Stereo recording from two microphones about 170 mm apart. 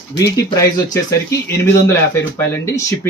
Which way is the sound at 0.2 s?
20° left (ahead or behind).